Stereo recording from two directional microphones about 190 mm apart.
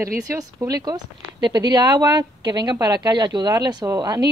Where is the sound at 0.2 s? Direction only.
15° right (ahead or behind).